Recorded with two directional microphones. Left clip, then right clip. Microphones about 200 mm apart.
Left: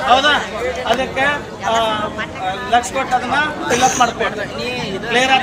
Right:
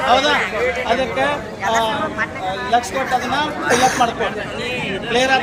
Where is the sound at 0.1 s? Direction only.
10° right (ahead or behind).